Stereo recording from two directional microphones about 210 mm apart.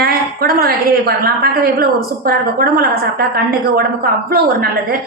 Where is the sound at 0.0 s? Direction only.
45° right (ahead or behind).